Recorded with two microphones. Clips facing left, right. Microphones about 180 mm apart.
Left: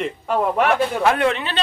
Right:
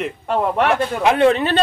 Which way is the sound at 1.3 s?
40° right (ahead or behind).